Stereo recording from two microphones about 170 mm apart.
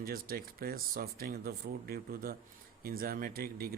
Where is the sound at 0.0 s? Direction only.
60° right (ahead or behind).